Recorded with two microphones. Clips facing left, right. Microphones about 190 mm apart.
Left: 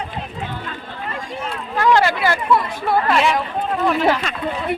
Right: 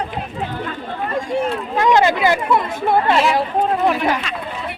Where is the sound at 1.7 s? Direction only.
20° right (ahead or behind).